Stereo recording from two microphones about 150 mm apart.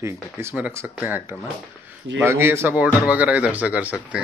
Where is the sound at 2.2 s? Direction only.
20° right (ahead or behind).